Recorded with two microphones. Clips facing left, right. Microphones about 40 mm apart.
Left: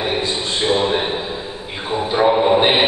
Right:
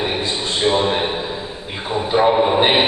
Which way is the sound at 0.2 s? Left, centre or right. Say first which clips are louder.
Right 1 dB; centre.